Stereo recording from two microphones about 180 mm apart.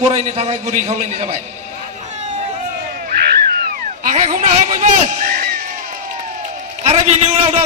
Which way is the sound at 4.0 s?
45° right (ahead or behind).